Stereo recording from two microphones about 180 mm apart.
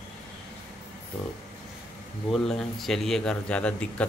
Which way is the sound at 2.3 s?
Centre (ahead or behind).